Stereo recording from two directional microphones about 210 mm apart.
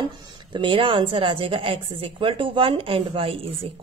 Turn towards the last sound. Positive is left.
turn(degrees=-25)  # may be behind; listen again after turning